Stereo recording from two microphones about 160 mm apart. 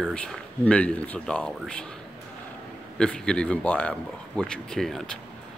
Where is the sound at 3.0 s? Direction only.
5° left (ahead or behind).